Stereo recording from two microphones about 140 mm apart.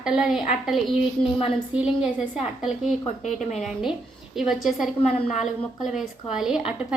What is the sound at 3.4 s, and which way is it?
Speech, 55° left (ahead or behind).